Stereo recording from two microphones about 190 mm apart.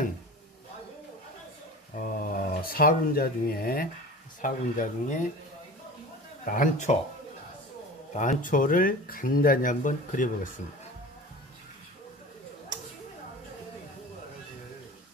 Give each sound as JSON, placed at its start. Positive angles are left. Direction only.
{"t": 2.0, "sound": "speech", "side_deg": 45}
{"t": 6.4, "sound": "speech", "side_deg": 45}
{"t": 8.1, "sound": "speech", "side_deg": 40}